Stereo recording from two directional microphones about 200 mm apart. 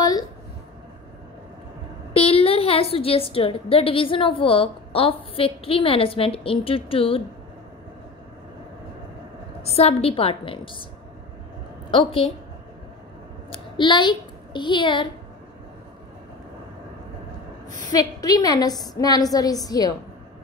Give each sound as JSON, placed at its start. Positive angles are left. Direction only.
{"t": 2.1, "sound": "a woman's voice", "side_deg": 30}
{"t": 9.6, "sound": "a woman's voice", "side_deg": 30}
{"t": 11.9, "sound": "a woman's voice", "side_deg": 25}
{"t": 13.7, "sound": "a woman's voice", "side_deg": 25}
{"t": 17.9, "sound": "a woman's voice", "side_deg": 20}